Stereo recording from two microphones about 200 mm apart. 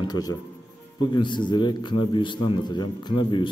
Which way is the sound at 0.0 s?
20° left (ahead or behind).